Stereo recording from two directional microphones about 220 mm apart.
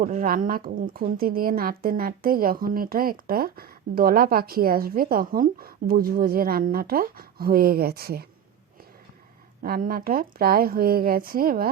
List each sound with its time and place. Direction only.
0.0 s a woman's voice: 40° right (ahead or behind)
9.6 s a woman's voice: 40° right (ahead or behind)